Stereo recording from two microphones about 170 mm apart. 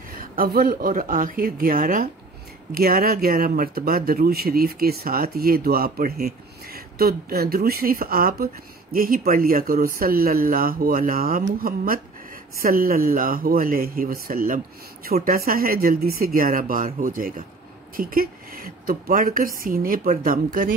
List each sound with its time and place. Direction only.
0.2 s speech: 60° right (ahead or behind)